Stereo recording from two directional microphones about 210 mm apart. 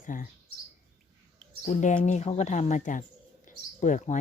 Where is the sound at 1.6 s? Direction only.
35° left (ahead or behind).